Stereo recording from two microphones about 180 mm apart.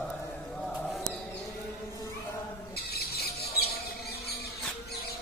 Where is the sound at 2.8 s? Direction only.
60° left (ahead or behind).